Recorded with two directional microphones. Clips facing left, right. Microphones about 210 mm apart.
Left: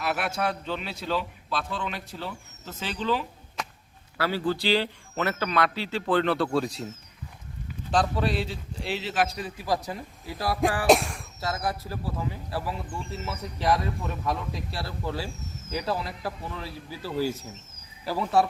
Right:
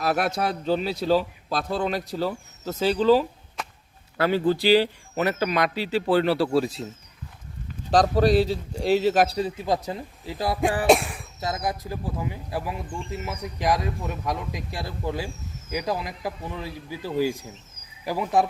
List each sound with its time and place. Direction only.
0.0 s a man's voice: 40° right (ahead or behind)
4.2 s speech: 20° right (ahead or behind)
7.9 s a man's voice: 40° right (ahead or behind); by 10.6 s 20° right (ahead or behind)
10.8 s speech: centre (ahead or behind)
11.3 s speech: 20° right (ahead or behind)